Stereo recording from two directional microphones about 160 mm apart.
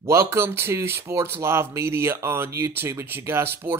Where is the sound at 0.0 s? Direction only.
15° right (ahead or behind).